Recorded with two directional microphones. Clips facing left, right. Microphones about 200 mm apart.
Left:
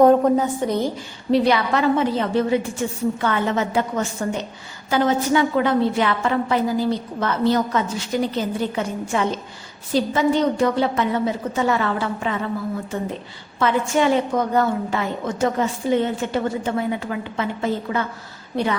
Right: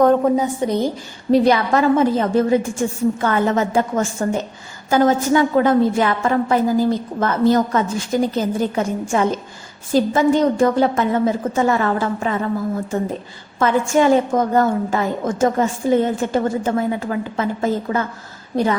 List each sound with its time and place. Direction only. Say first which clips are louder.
1.3 s a woman's voice: right 3 dB; 45° right (ahead or behind)
13.6 s a woman's voice: right 3 dB; 45° right (ahead or behind)